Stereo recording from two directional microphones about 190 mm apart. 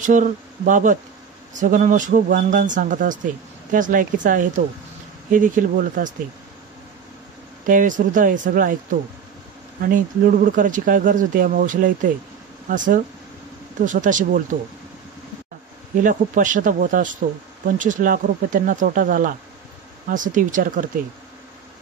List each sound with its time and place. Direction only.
0.0 s speech: 40° right (ahead or behind)
7.6 s speech: 45° right (ahead or behind)
9.8 s speech: 45° right (ahead or behind)
15.9 s speech: 45° right (ahead or behind)